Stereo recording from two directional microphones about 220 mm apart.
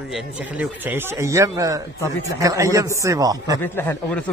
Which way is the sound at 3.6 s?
10° left (ahead or behind).